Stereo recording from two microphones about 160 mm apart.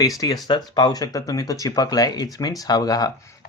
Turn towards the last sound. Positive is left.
turn(degrees=25)  # may be behind; listen again after turning